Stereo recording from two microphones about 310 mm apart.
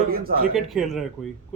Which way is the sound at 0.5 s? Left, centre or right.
Centre.